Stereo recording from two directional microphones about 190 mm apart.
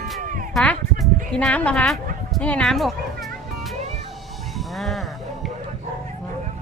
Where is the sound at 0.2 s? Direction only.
45° right (ahead or behind).